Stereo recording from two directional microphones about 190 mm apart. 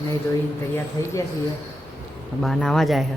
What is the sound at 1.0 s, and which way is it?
Speech, 15° left (ahead or behind).